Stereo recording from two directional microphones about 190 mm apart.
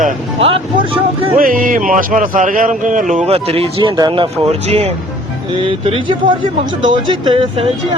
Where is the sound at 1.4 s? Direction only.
50° right (ahead or behind).